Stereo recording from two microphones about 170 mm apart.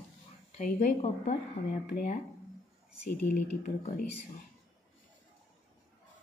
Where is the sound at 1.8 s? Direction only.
60° left (ahead or behind).